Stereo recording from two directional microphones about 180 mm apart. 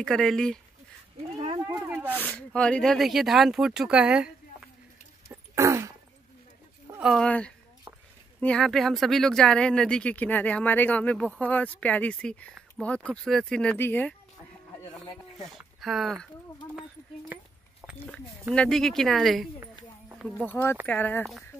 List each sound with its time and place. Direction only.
0.0 s speech: centre (ahead or behind)
1.7 s snake: 15° right (ahead or behind)
2.2 s speech: 5° left (ahead or behind)
5.5 s a sound: 15° right (ahead or behind)
6.9 s a sound: 5° right (ahead or behind)
7.2 s speech: 5° left (ahead or behind)
15.5 s speech: centre (ahead or behind)
18.5 s speech: 5° left (ahead or behind)
20.4 s speech: 10° left (ahead or behind)